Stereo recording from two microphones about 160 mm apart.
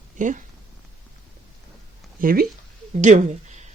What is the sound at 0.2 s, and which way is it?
Speech, 55° right (ahead or behind).